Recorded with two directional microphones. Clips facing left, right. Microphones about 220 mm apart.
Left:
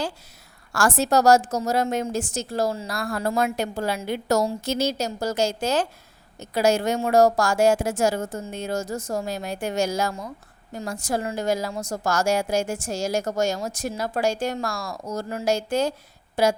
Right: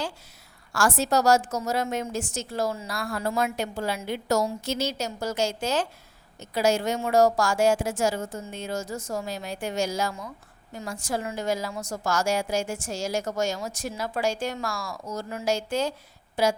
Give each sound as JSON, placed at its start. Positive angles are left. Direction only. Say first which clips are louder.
{"t": 0.7, "sound": "a woman's voice", "louder": "left 3 dB", "side_deg": 40}
{"t": 9.7, "sound": "speech", "louder": "left 3 dB", "side_deg": 60}
{"t": 10.0, "sound": "a woman's voice", "louder": "left 3 dB", "side_deg": 40}